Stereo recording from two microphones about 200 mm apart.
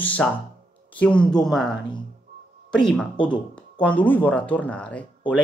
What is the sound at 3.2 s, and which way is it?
Speech, 25° left (ahead or behind).